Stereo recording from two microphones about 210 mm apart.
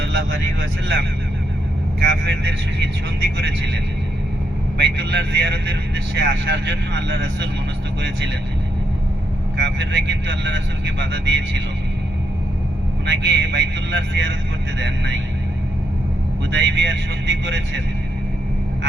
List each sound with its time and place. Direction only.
0.0 s speech: 70° right (ahead or behind)
4.8 s speech: 55° right (ahead or behind)
9.6 s speech: 55° right (ahead or behind)
13.1 s speech: 55° right (ahead or behind)
16.5 s speech: 60° right (ahead or behind)